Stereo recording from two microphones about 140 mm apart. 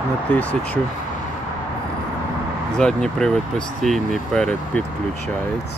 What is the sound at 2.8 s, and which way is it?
Speech, 5° left (ahead or behind).